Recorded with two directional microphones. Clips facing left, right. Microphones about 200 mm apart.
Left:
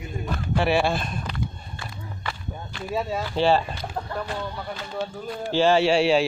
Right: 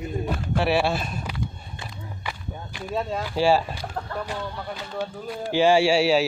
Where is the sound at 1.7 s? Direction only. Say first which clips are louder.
Even; 15° right (ahead or behind).